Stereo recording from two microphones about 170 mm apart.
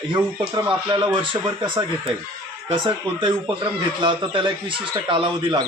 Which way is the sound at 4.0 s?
30° right (ahead or behind).